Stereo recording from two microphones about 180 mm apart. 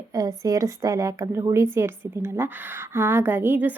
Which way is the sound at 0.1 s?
20° right (ahead or behind).